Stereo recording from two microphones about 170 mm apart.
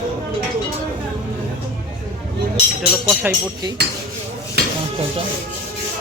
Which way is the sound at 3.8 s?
75° right (ahead or behind).